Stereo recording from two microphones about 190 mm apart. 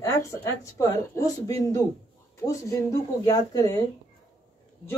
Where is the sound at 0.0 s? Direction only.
15° left (ahead or behind).